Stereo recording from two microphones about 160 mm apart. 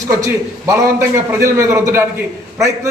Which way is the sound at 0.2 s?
20° right (ahead or behind).